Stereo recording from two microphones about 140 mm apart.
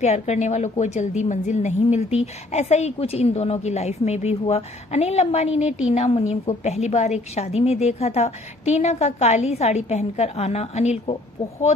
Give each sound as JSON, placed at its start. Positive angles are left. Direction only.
{"t": 0.0, "sound": "a woman's voice", "side_deg": 50}